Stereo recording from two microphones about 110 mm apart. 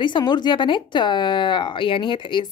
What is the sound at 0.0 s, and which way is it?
Speech, 45° left (ahead or behind).